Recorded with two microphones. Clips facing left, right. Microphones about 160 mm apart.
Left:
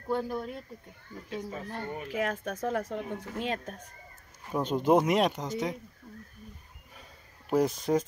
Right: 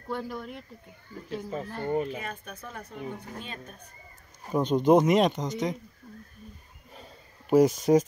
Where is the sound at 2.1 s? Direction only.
90° left.